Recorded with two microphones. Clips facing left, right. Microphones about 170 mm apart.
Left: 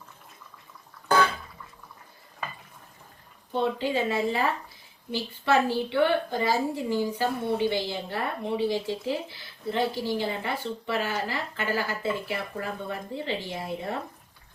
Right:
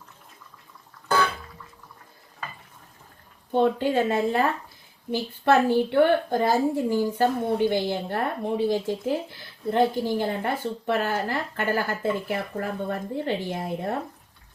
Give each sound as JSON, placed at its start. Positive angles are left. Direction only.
{"t": 3.5, "sound": "a woman's voice", "side_deg": -50}
{"t": 5.5, "sound": "a woman's voice", "side_deg": -50}